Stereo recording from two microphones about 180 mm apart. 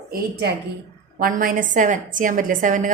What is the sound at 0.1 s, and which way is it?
Speech, 65° right (ahead or behind).